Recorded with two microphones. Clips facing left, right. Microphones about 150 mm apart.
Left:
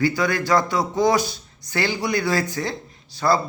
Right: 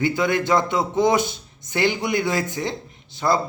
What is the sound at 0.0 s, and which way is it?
Speech, 20° right (ahead or behind).